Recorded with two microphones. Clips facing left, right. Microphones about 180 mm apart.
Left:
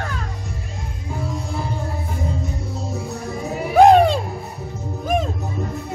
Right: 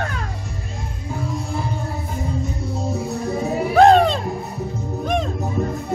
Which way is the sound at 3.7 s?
10° left (ahead or behind).